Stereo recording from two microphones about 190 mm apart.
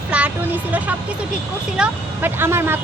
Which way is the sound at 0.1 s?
5° right (ahead or behind).